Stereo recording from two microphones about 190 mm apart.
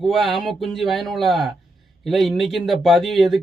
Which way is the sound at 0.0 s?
Centre (ahead or behind).